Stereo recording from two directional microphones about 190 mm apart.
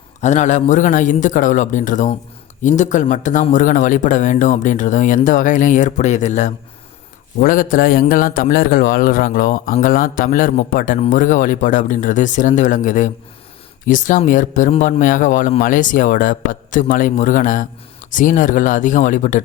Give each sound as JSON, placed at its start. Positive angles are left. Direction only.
{"t": 0.2, "sound": "a man's voice", "side_deg": 40}